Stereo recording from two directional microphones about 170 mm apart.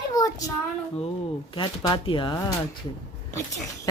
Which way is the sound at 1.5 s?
30° left (ahead or behind).